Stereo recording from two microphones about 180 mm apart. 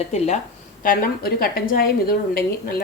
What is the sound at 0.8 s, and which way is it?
A woman's voice, 50° left (ahead or behind).